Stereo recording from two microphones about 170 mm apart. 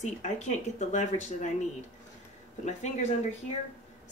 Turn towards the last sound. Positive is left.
turn(degrees=45)  # may be behind; listen again after turning